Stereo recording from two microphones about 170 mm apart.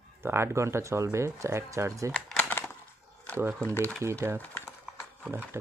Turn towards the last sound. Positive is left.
turn(degrees=-15)  # may be behind; listen again after turning